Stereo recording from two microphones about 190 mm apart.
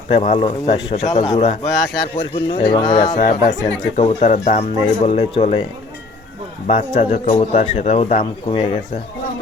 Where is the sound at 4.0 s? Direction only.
35° left (ahead or behind).